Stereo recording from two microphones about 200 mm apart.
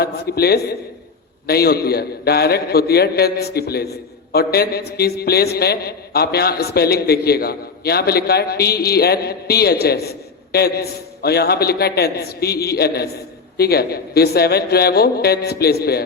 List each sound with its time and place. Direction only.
0.0 s a man's voice: 55° left (ahead or behind)